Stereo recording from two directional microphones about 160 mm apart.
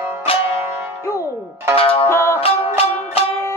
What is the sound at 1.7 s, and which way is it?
Music, 35° left (ahead or behind).